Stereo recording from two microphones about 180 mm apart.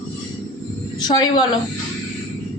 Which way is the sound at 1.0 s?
25° left (ahead or behind).